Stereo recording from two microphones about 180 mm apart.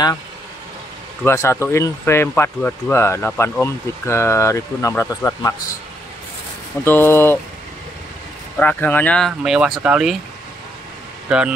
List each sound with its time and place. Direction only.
1.2 s speech: 15° left (ahead or behind)
6.8 s speech: 10° left (ahead or behind)
8.5 s speech: 10° left (ahead or behind)
11.2 s speech: 5° right (ahead or behind)